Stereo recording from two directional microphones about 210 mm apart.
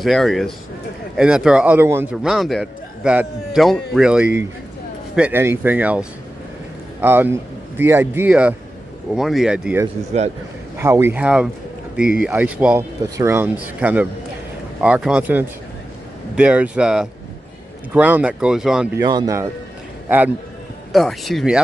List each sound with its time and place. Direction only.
0.0 s a man's voice: centre (ahead or behind)
18.9 s speech: 15° right (ahead or behind)
20.9 s a man's voice: centre (ahead or behind)